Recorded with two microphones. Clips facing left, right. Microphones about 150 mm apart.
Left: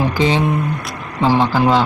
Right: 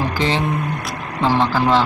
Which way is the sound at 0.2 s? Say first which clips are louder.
Left 4 dB; 20° left (ahead or behind).